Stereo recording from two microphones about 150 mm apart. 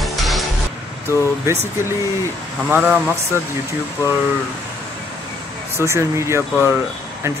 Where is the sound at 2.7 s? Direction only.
10° right (ahead or behind).